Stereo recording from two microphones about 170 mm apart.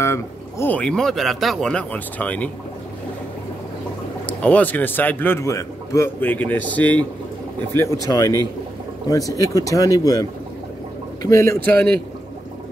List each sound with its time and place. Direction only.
0.0 s a man's voice: 15° left (ahead or behind)
4.3 s a man's voice: 10° left (ahead or behind)
11.2 s a man's voice: 15° left (ahead or behind)